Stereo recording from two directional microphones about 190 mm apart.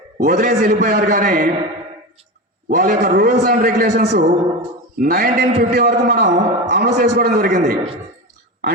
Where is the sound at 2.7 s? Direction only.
45° right (ahead or behind).